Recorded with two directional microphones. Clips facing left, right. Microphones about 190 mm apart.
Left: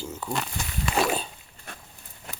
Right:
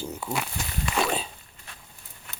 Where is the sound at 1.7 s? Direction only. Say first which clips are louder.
Left 6 dB; 50° left (ahead or behind).